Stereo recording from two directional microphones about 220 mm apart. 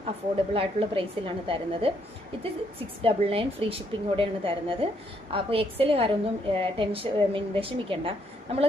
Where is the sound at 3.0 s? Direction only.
25° right (ahead or behind).